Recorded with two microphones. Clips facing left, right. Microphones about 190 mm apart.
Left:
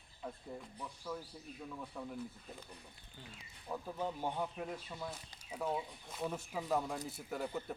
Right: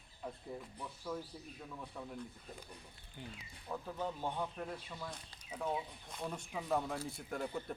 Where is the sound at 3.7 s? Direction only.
10° left (ahead or behind).